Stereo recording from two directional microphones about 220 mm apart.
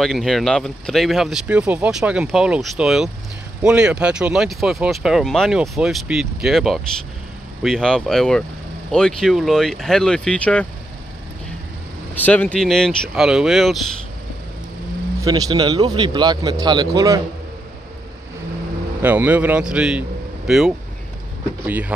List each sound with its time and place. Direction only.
0.0 s speech: centre (ahead or behind)
12.2 s speech: 5° left (ahead or behind)
15.2 s a man's voice: 15° right (ahead or behind)
18.9 s speech: 10° right (ahead or behind)